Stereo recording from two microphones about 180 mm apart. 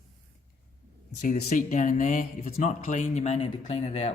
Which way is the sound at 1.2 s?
40° left (ahead or behind).